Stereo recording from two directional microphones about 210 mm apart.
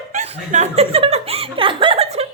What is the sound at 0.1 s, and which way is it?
Speech, 35° right (ahead or behind).